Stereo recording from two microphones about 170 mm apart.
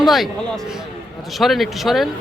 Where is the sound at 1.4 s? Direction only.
Centre (ahead or behind).